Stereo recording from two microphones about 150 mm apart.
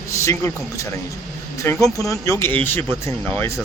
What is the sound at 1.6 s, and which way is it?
Speech, 20° left (ahead or behind).